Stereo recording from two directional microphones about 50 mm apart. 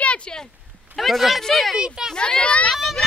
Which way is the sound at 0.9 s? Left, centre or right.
Centre.